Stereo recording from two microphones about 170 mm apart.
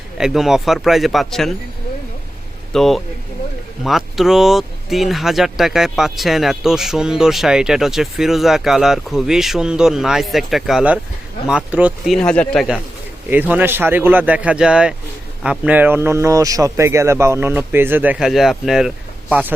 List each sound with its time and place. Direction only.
0.2 s speech: centre (ahead or behind)
2.7 s speech: centre (ahead or behind)
13.3 s speech: 10° right (ahead or behind)